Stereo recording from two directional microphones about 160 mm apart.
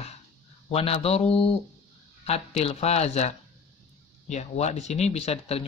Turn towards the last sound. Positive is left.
turn(degrees=40)  # may be behind; listen again after turning